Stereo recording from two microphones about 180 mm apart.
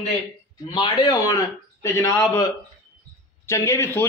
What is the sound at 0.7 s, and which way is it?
A man's voice, 20° left (ahead or behind).